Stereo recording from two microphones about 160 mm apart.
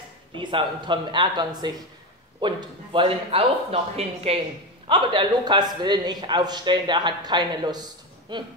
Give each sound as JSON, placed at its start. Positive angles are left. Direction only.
{"t": 0.3, "sound": "a man's voice", "side_deg": -30}